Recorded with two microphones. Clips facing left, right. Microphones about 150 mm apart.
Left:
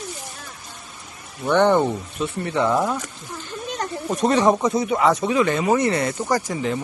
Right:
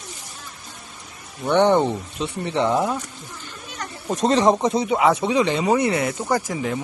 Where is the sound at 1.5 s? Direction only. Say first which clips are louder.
Even; 15° right (ahead or behind).